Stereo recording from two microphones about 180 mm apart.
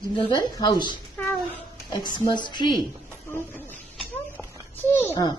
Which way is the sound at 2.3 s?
25° left (ahead or behind).